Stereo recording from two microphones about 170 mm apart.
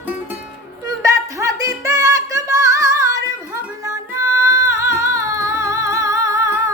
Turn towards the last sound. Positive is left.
turn(degrees=-20)  # may be behind; listen again after turning